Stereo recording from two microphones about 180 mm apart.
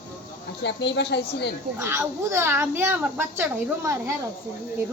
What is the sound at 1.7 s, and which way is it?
A child's voice, 15° right (ahead or behind).